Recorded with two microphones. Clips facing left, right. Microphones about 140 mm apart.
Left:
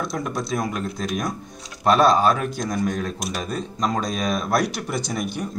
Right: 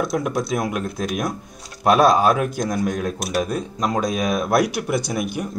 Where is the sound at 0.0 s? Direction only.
10° right (ahead or behind).